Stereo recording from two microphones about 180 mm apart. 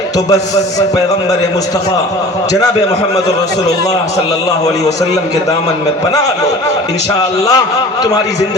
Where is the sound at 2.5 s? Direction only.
20° left (ahead or behind).